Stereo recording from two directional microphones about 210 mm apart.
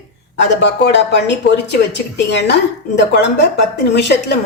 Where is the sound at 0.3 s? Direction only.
55° left (ahead or behind).